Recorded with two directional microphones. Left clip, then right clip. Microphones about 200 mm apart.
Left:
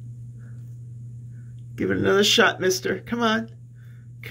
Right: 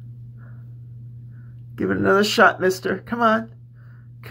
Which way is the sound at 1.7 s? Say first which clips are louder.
Right 2 dB; 25° left (ahead or behind).